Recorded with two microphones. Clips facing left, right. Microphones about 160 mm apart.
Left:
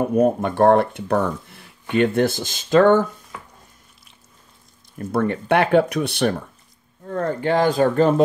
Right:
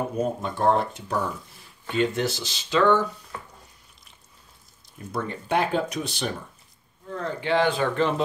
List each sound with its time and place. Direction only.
0.1 s speech: 60° left (ahead or behind)
4.9 s speech: 60° left (ahead or behind)
7.1 s speech: 50° left (ahead or behind)